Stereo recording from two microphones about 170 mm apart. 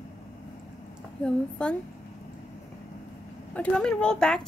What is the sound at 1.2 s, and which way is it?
Speech, 5° left (ahead or behind).